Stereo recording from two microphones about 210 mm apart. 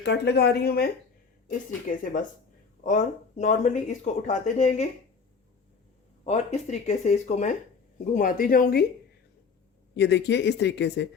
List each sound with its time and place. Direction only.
0.0 s speech: 50° left (ahead or behind)
1.9 s speech: 40° left (ahead or behind)
6.2 s speech: 30° left (ahead or behind)
9.9 s speech: 55° left (ahead or behind)